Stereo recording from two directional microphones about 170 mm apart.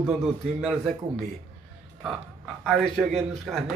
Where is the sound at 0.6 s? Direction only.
Centre (ahead or behind).